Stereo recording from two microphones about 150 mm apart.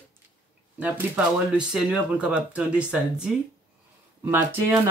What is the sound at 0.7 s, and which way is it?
Speech, 10° right (ahead or behind).